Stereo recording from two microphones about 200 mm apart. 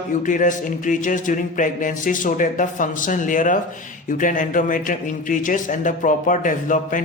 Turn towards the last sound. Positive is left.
turn(degrees=40)  # may be behind; listen again after turning